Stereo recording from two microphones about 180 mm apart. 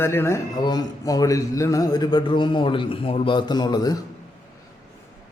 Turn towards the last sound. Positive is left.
turn(degrees=20)  # may be behind; listen again after turning